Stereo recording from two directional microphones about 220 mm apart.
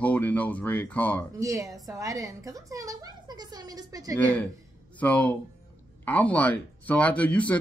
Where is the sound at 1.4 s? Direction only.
15° right (ahead or behind).